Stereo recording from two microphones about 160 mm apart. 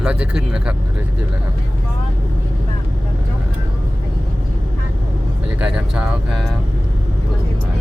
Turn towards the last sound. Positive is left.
turn(degrees=-5)  # may be behind; listen again after turning